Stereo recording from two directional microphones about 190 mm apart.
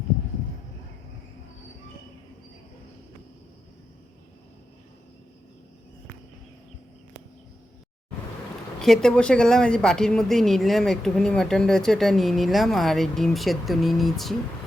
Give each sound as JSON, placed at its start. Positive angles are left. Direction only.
{"t": 8.8, "sound": "speech", "side_deg": 5}